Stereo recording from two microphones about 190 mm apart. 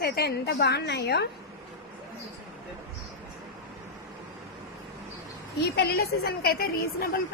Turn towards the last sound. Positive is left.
turn(degrees=50)  # may be behind; listen again after turning